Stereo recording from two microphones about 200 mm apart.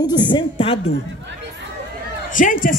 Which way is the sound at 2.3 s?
40° left (ahead or behind).